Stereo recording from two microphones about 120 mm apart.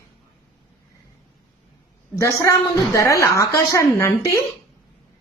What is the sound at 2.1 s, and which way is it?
A woman's voice, 25° left (ahead or behind).